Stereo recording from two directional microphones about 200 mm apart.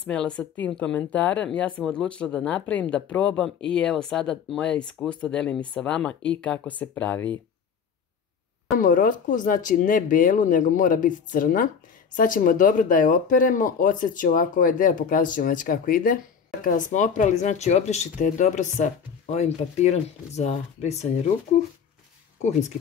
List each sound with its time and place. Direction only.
0.0 s speech: 5° left (ahead or behind)
8.7 s speech: 45° left (ahead or behind)